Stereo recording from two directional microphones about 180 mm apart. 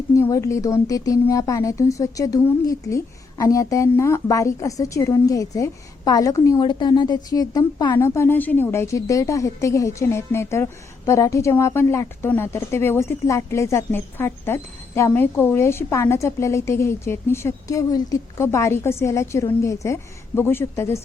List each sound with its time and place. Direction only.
0.1 s speech: 20° left (ahead or behind)